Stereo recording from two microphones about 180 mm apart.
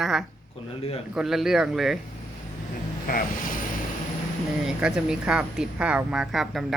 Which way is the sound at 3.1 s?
50° left (ahead or behind).